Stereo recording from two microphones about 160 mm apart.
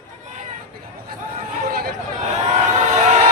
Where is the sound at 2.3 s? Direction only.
45° right (ahead or behind).